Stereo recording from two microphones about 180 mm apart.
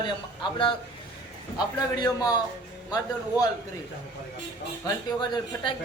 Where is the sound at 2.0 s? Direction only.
20° left (ahead or behind).